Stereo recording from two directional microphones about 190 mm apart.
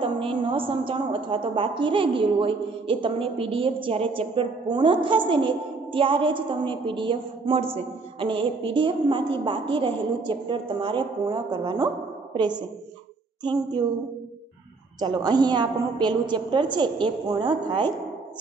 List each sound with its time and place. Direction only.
0.0 s a woman's voice: 30° right (ahead or behind)
13.4 s a woman's voice: 25° right (ahead or behind)
15.0 s a woman's voice: 20° right (ahead or behind)